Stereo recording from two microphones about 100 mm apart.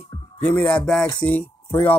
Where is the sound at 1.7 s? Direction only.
20° left (ahead or behind).